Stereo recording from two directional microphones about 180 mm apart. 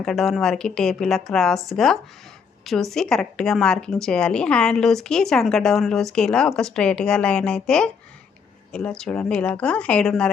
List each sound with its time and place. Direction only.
0.0 s a woman's voice: centre (ahead or behind)